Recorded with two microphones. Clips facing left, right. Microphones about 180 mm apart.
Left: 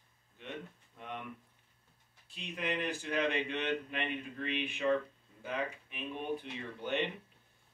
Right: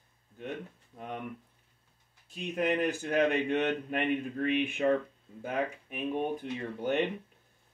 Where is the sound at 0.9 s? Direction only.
35° right (ahead or behind).